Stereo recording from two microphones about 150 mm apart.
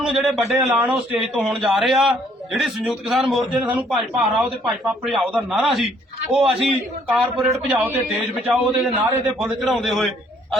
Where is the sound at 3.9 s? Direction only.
Centre (ahead or behind).